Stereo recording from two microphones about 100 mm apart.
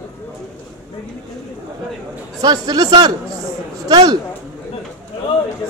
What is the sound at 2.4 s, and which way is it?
A man's voice, 40° right (ahead or behind).